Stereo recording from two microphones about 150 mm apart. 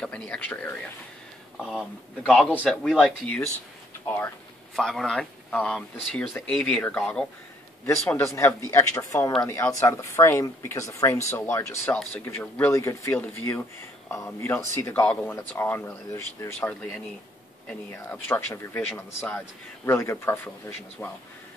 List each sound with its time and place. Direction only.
0.0 s speech: 10° left (ahead or behind)
1.6 s speech: 5° right (ahead or behind)
2.2 s speech: 5° left (ahead or behind)
4.7 s speech: 5° left (ahead or behind)
7.8 s speech: 15° left (ahead or behind)